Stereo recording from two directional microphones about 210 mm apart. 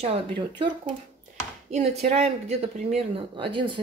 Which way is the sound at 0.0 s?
25° right (ahead or behind).